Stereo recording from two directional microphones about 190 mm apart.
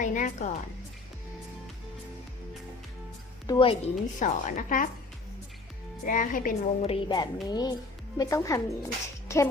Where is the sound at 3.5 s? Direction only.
25° left (ahead or behind).